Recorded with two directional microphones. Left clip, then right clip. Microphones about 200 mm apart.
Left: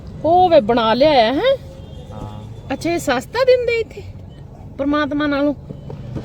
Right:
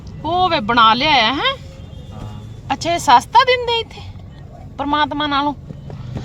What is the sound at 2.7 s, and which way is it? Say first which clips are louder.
Speech: right 7 dB; 5° right (ahead or behind).